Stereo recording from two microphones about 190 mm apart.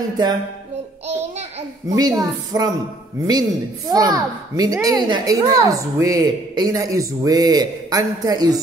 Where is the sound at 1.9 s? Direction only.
20° right (ahead or behind).